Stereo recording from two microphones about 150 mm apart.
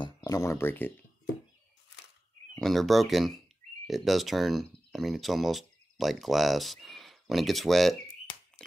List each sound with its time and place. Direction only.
0.0 s speech: 20° left (ahead or behind)
2.5 s speech: centre (ahead or behind)